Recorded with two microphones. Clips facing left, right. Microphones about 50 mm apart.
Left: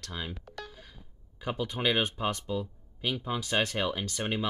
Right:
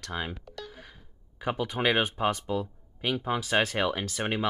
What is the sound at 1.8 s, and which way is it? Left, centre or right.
Speech, right.